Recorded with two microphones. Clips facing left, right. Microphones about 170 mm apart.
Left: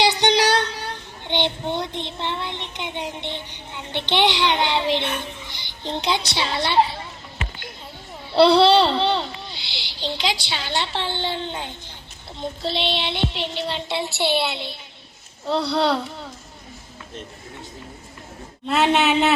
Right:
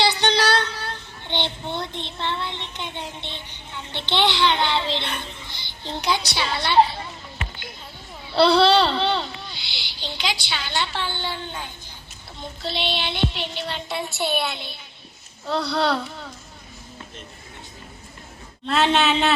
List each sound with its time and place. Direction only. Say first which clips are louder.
0.0 s child singing: left 2 dB; 15° left (ahead or behind)
8.3 s a child's voice: left 2 dB; 25° left (ahead or behind)
18.6 s speech: left 1 dB; 10° left (ahead or behind)